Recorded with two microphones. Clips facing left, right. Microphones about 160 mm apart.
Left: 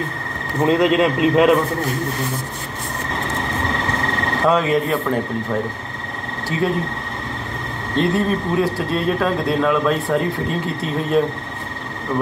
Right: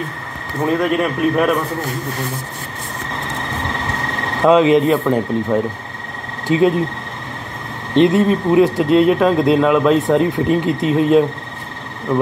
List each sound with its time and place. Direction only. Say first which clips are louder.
0.7 s a man's voice: left 1 dB; 20° left (ahead or behind)
4.5 s speech: right 7 dB; 20° right (ahead or behind)
6.5 s speech: right 8 dB; 90° right
7.9 s speech: right 6 dB; 20° right (ahead or behind)